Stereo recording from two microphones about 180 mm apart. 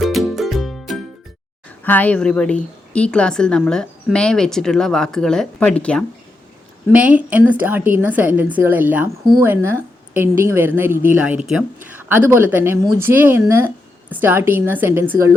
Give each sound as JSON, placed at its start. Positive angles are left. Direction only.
{"t": 0.0, "sound": "music", "side_deg": 0}
{"t": 1.8, "sound": "a woman's voice", "side_deg": 10}
{"t": 6.8, "sound": "a woman's voice", "side_deg": -10}
{"t": 9.2, "sound": "a woman's voice", "side_deg": -25}